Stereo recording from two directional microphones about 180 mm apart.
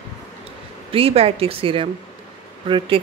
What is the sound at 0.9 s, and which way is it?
Speech, 35° right (ahead or behind).